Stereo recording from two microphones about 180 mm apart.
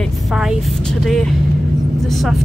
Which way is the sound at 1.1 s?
5° left (ahead or behind).